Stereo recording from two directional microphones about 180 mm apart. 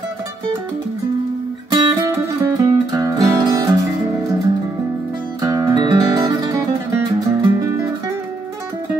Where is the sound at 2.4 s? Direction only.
20° right (ahead or behind).